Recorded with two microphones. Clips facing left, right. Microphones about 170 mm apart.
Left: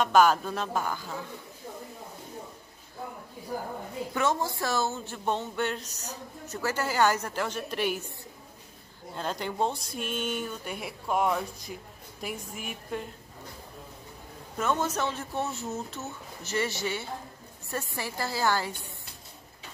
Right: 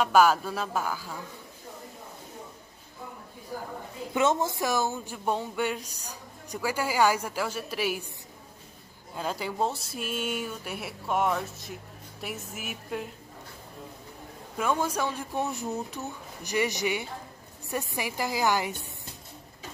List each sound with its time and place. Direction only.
0.0 s speech: 5° right (ahead or behind)
4.1 s speech: 20° right (ahead or behind); by 8.0 s 5° right (ahead or behind)
9.1 s speech: 5° right (ahead or behind)
14.6 s speech: 10° right (ahead or behind)